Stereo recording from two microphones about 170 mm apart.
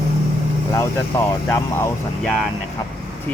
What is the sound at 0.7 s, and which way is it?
Speech, 15° left (ahead or behind).